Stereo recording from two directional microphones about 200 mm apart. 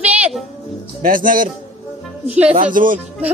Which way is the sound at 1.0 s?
45° right (ahead or behind).